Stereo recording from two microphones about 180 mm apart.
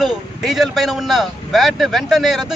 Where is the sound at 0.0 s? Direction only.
Centre (ahead or behind).